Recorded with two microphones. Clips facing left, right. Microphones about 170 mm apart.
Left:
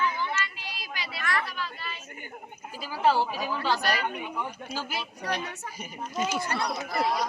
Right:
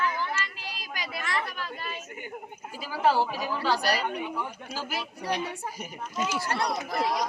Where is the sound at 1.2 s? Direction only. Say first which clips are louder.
Left 2 dB; 25° right (ahead or behind).